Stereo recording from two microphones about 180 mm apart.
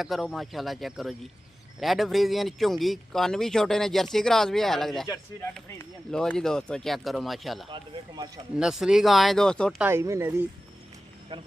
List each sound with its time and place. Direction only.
0.0 s speech: centre (ahead or behind)
5.0 s speech: 20° left (ahead or behind)
6.1 s speech: 5° left (ahead or behind)
7.7 s speech: 25° right (ahead or behind)
8.5 s speech: 5° right (ahead or behind)
9.8 s speech: 15° right (ahead or behind)